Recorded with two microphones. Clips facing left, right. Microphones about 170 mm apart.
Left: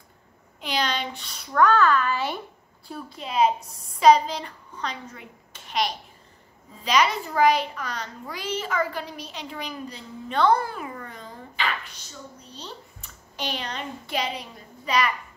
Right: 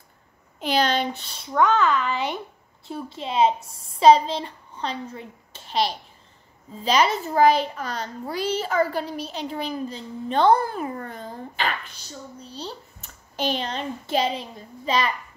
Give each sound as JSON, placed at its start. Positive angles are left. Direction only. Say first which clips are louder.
{"t": 0.6, "sound": "a sound", "louder": "right 5 dB", "side_deg": -45}
{"t": 1.2, "sound": "a woman's voice", "louder": "right 1 dB", "side_deg": -30}
{"t": 1.5, "sound": "a woman's voice", "louder": "left 1 dB", "side_deg": -20}
{"t": 12.4, "sound": "a child's voice", "louder": "right 5 dB", "side_deg": -35}